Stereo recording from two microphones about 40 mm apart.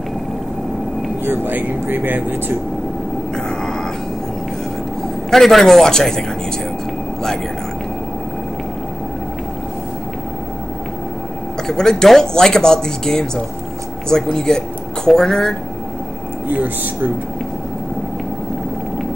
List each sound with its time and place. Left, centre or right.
1.2 s speech: right
5.3 s speech: centre
11.6 s speech: centre